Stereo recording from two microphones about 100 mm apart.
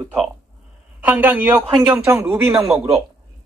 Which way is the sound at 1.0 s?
15° right (ahead or behind).